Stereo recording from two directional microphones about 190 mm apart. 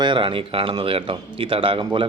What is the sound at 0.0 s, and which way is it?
Speech, 25° right (ahead or behind).